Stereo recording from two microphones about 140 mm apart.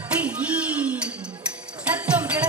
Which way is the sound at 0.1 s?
10° right (ahead or behind).